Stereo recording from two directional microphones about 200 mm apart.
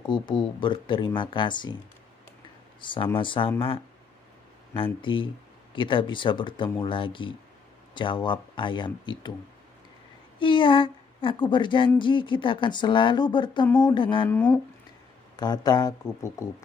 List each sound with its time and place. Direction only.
0.0 s speech: 20° left (ahead or behind)
2.8 s speech: 25° left (ahead or behind)
10.4 s speech: 25° left (ahead or behind)
14.3 s speech: 5° left (ahead or behind)
15.3 s speech: 20° left (ahead or behind)